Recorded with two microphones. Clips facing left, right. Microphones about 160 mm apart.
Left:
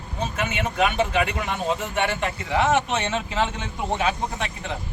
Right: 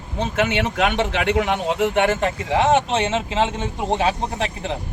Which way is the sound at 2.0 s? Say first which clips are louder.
Right 5 dB; 45° right (ahead or behind).